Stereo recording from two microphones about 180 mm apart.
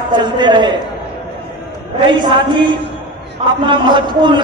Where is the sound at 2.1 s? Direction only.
25° right (ahead or behind).